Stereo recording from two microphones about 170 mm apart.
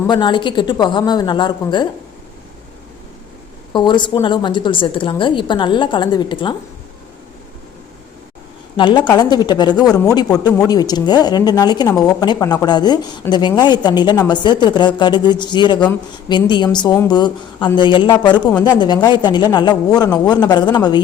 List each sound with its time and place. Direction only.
0.1 s a woman's voice: 25° left (ahead or behind)
3.7 s a woman's voice: 25° left (ahead or behind)
8.7 s a woman's voice: 30° left (ahead or behind)